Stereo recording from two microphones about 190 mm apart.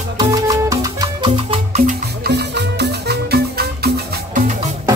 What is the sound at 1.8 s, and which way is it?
Music, 50° right (ahead or behind).